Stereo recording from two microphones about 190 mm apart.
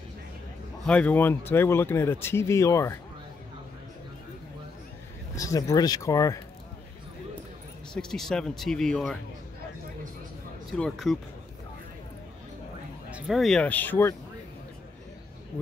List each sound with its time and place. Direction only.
0.8 s speech: 5° left (ahead or behind)
5.3 s speech: 15° left (ahead or behind)
7.9 s speech: 5° left (ahead or behind)
10.7 s speech: centre (ahead or behind)
13.1 s speech: centre (ahead or behind)